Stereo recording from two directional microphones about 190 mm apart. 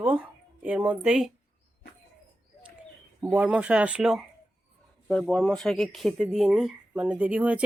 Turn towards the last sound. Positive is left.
turn(degrees=-10)  # may be behind; listen again after turning